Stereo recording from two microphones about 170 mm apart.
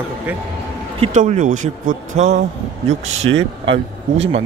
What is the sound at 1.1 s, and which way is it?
A man's voice, 45° right (ahead or behind).